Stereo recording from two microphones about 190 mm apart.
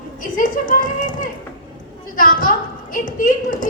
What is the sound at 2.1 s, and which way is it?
A woman's voice, 45° left (ahead or behind).